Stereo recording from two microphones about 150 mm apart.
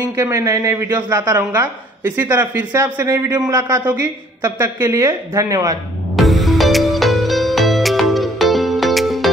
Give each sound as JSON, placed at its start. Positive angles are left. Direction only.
{"t": 0.0, "sound": "a woman's voice", "side_deg": -20}
{"t": 6.1, "sound": "music", "side_deg": 0}